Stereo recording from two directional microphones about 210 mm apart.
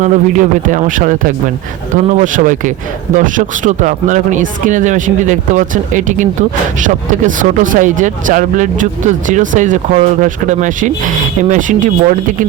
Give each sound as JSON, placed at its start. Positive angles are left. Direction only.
{"t": 0.0, "sound": "speech", "side_deg": -35}